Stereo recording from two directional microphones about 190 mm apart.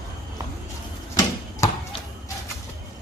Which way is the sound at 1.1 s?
15° left (ahead or behind).